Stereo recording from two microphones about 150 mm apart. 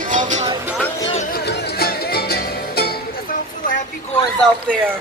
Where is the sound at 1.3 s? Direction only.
90° left.